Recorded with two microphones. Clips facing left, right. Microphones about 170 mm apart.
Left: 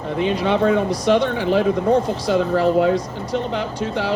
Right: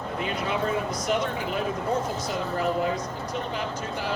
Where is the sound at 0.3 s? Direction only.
80° left.